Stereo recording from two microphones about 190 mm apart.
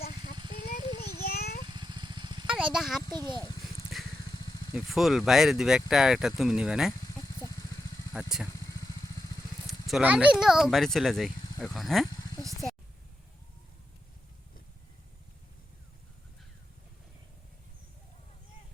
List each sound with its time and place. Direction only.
1.0 s a sound: 55° left (ahead or behind)
1.6 s vehicle: 25° right (ahead or behind)
2.5 s speech: 5° right (ahead or behind)
3.1 s a child's voice: 20° right (ahead or behind)
3.9 s vehicle: centre (ahead or behind)
4.3 s vehicle: 20° left (ahead or behind)
4.7 s speech: centre (ahead or behind)
7.0 s a sound: 20° left (ahead or behind)
8.3 s speech: 5° right (ahead or behind)
9.6 s speech: centre (ahead or behind)
12.4 s a sound: centre (ahead or behind)